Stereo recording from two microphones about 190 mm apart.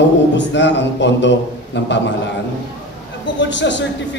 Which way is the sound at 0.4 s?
70° left (ahead or behind).